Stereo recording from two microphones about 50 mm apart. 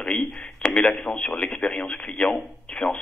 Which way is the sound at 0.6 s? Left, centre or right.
Left.